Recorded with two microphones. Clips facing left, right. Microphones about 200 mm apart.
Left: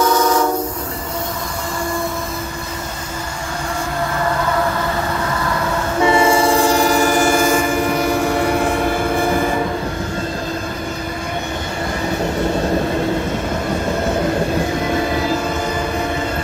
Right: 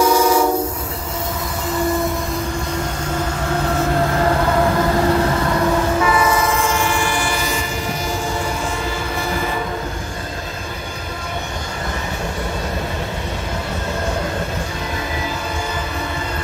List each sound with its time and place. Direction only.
0.0 s train: 10° right (ahead or behind)
6.0 s train: 25° left (ahead or behind); by 9.4 s 55° left (ahead or behind)